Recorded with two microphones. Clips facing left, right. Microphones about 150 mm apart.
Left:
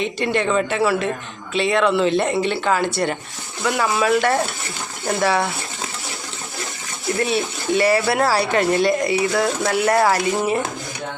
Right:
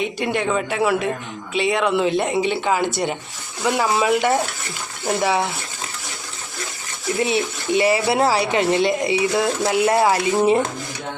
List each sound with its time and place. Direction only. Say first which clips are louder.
0.0 s speech: left 1 dB; 10° right (ahead or behind)
7.2 s speech: right 1 dB; 20° right (ahead or behind)